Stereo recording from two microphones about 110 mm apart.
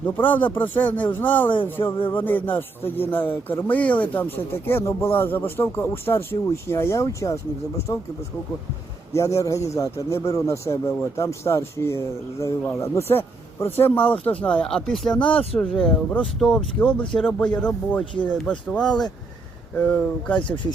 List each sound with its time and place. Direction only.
0.0 s speech: 15° left (ahead or behind)
6.3 s speech: 40° left (ahead or behind)
6.7 s speech: 25° left (ahead or behind)
9.1 s speech: 30° left (ahead or behind)